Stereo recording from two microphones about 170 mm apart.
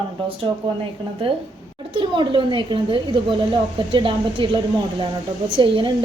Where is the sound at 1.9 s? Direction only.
30° right (ahead or behind).